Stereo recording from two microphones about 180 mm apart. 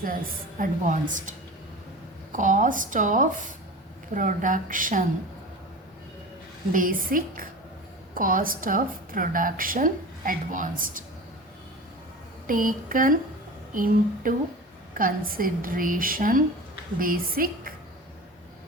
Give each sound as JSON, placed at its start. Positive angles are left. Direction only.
{"t": 0.6, "sound": "a woman's voice", "side_deg": -45}
{"t": 6.7, "sound": "a woman's voice", "side_deg": -50}
{"t": 12.5, "sound": "a woman's voice", "side_deg": -50}